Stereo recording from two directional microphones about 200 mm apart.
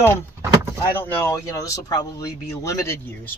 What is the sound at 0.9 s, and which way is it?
Speech, 10° left (ahead or behind).